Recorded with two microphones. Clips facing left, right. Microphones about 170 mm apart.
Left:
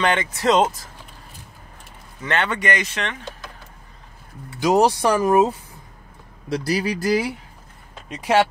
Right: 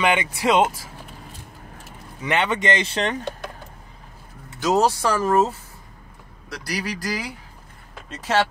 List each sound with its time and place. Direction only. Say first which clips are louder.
0.0 s speech: left 1 dB; 10° right (ahead or behind)
2.2 s speech: right 1 dB; 15° right (ahead or behind); by 3.3 s 35° right (ahead or behind)
4.6 s speech: left 3 dB; 15° left (ahead or behind)
6.5 s a man's voice: left 7 dB; 25° left (ahead or behind)
8.1 s speech: left 3 dB; 15° left (ahead or behind)